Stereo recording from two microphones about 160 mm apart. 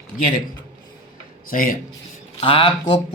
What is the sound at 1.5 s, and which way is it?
Speech, 60° left (ahead or behind).